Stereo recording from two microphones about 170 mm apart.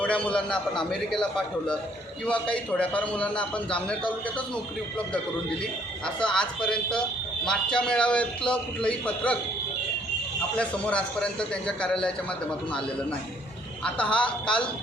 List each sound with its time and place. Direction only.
0.0 s a man's voice: 5° left (ahead or behind)
6.2 s a man's voice: 5° left (ahead or behind)
10.6 s a man's voice: 5° left (ahead or behind)